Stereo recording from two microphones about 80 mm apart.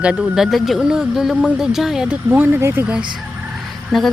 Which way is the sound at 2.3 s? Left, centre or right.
Right.